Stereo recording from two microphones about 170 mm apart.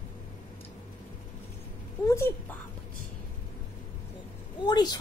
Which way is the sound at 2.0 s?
15° left (ahead or behind).